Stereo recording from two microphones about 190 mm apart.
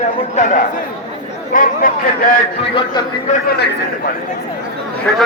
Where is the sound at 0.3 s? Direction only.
40° left (ahead or behind).